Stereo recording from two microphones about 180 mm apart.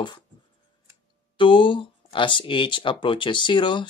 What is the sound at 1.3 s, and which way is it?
Speech, 25° left (ahead or behind).